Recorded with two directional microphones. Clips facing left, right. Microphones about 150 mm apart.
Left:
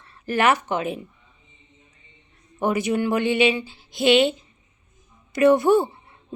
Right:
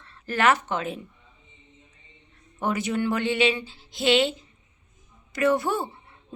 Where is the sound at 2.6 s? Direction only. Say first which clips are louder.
Left 4 dB; 15° left (ahead or behind).